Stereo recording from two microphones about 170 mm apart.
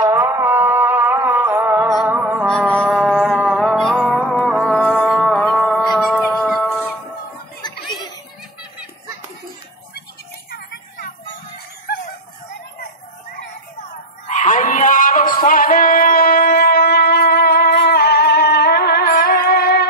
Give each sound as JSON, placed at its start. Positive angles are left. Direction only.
{"t": 0.0, "sound": "music", "side_deg": -15}
{"t": 7.6, "sound": "chuckle", "side_deg": 25}
{"t": 14.2, "sound": "music", "side_deg": 45}